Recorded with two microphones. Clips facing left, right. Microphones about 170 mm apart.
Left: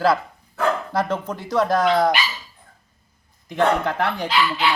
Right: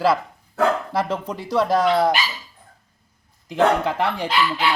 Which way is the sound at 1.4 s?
10° right (ahead or behind).